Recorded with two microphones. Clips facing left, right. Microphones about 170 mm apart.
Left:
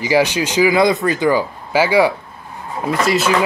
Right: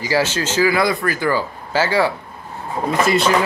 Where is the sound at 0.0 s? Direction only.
15° left (ahead or behind).